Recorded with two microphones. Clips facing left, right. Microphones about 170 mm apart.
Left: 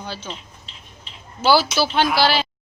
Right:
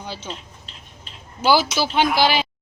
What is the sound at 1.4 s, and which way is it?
Speech, 15° right (ahead or behind).